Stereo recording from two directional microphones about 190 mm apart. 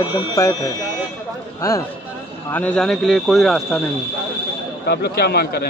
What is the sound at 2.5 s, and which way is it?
Speech, 5° left (ahead or behind).